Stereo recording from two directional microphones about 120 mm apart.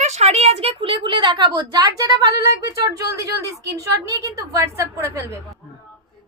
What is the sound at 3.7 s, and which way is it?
A woman's voice, 30° right (ahead or behind).